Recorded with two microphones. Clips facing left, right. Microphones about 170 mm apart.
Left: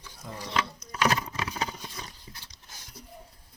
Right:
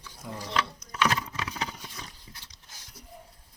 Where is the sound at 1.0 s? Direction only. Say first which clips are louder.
Left 1 dB; 40° left (ahead or behind).